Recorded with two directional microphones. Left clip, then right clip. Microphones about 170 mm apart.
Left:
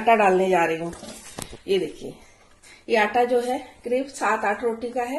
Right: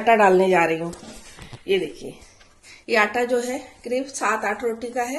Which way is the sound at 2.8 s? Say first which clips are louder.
Even; centre (ahead or behind).